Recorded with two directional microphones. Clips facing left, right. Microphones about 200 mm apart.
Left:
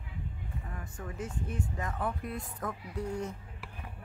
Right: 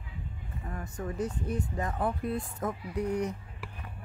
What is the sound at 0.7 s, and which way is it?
Speech, 40° right (ahead or behind).